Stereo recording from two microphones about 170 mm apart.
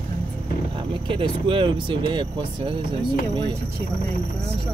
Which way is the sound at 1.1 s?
30° right (ahead or behind).